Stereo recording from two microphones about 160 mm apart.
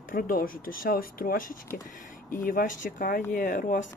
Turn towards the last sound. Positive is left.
turn(degrees=55)  # may be behind; listen again after turning